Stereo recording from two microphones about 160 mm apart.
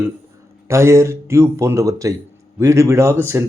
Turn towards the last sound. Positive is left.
turn(degrees=-15)  # may be behind; listen again after turning